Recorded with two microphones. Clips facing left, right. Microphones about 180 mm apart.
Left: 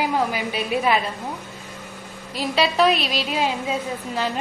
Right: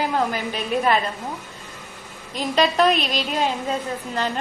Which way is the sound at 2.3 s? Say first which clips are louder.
Right 1 dB; 5° left (ahead or behind).